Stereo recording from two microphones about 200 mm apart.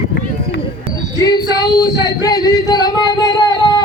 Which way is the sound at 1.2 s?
20° left (ahead or behind).